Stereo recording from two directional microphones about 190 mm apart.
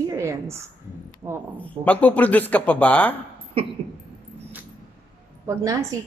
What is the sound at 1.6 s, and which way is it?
Speech, 10° left (ahead or behind).